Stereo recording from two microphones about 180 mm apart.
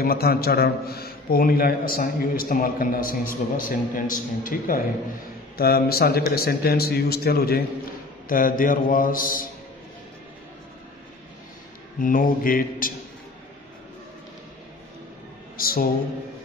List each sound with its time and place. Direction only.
0.0 s a man's voice: 55° left (ahead or behind)
12.0 s a man's voice: 50° left (ahead or behind)
15.5 s speech: 55° left (ahead or behind)